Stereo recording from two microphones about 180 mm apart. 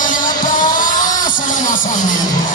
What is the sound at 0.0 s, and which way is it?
Music, 45° left (ahead or behind).